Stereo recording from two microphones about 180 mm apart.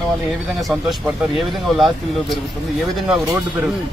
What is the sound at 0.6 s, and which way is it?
Speech, centre (ahead or behind).